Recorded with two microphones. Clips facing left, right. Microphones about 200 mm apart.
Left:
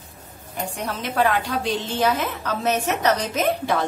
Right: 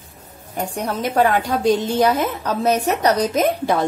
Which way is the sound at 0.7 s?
45° right (ahead or behind).